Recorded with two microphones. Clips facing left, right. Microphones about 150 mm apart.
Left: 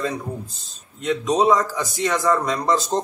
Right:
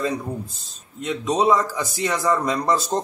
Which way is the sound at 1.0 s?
5° right (ahead or behind).